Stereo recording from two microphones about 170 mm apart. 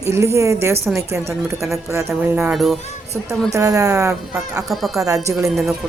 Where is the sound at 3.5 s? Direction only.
20° right (ahead or behind).